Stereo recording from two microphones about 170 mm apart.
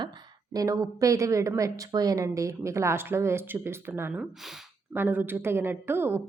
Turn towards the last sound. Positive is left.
turn(degrees=-15)  # may be behind; listen again after turning